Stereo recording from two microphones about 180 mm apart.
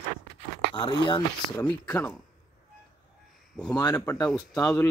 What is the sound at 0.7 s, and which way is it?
Speech, 25° left (ahead or behind).